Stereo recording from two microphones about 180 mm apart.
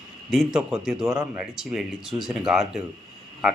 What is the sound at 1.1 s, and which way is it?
Speech, 15° right (ahead or behind).